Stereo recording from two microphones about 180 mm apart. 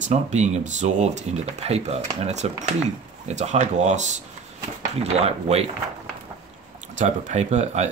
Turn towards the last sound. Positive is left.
turn(degrees=-40)  # may be behind; listen again after turning